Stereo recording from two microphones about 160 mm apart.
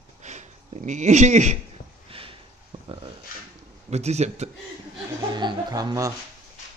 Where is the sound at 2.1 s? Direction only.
35° right (ahead or behind).